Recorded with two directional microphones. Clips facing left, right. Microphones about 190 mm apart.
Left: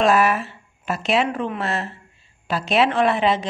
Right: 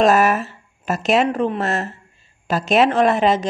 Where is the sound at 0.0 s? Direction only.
40° right (ahead or behind).